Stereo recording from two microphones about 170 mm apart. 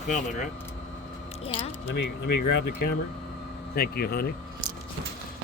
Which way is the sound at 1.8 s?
90° left.